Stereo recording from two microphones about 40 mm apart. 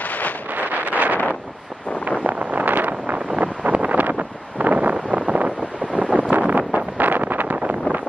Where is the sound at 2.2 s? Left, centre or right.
Right.